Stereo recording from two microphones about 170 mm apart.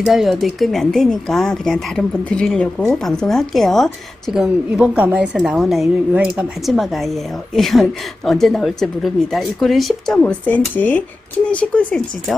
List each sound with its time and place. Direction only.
0.0 s speech: centre (ahead or behind)